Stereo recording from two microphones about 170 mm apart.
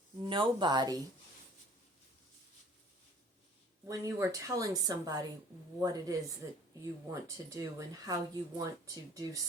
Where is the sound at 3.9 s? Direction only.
15° right (ahead or behind).